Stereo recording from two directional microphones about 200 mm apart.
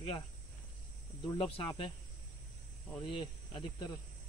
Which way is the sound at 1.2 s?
25° left (ahead or behind).